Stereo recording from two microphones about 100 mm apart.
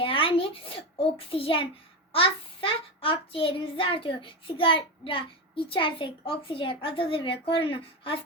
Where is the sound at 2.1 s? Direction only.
65° left (ahead or behind).